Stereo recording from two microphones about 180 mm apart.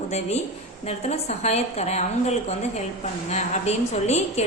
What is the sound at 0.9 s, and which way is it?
A woman's voice, 35° left (ahead or behind).